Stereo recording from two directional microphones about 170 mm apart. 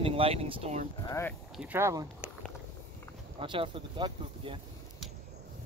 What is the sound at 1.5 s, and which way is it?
Speech, 10° right (ahead or behind).